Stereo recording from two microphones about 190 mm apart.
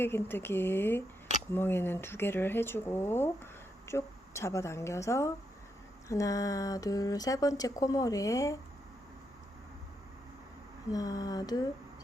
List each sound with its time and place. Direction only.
0.0 s speech: 10° left (ahead or behind)
10.9 s speech: 20° left (ahead or behind)